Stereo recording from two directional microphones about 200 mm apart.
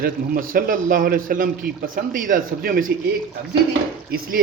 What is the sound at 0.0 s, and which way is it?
Speech, 45° right (ahead or behind).